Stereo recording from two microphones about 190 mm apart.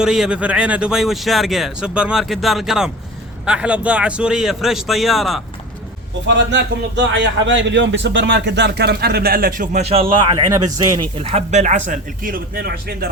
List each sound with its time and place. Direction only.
0.0 s speech: 5° right (ahead or behind)
6.2 s a man's voice: 70° right (ahead or behind); by 10.4 s 30° right (ahead or behind)
10.5 s speech: 20° right (ahead or behind)
11.2 s speech: 35° right (ahead or behind); by 13.1 s 50° right (ahead or behind)